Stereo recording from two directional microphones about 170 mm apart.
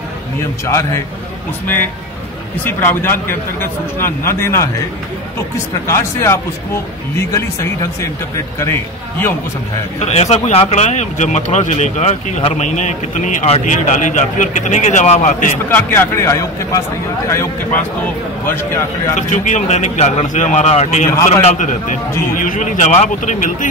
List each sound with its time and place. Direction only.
0.7 s speech: 15° left (ahead or behind)
2.6 s speech: 10° left (ahead or behind)
5.9 s speech: 15° left (ahead or behind)
9.9 s speech: 40° left (ahead or behind)
15.7 s speech: 15° left (ahead or behind)
18.0 s speech: 10° left (ahead or behind)
19.2 s a man's voice: 45° left (ahead or behind)